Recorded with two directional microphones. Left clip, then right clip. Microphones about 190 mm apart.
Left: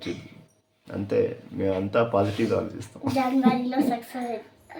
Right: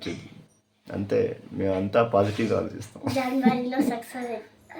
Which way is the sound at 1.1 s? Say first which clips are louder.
Left 1 dB; 15° right (ahead or behind).